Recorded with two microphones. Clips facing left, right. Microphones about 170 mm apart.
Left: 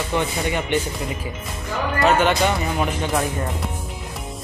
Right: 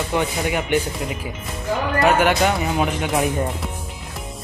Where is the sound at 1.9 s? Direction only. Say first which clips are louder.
Even; 5° right (ahead or behind).